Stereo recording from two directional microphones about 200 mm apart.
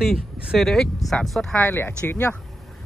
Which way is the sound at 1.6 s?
15° left (ahead or behind).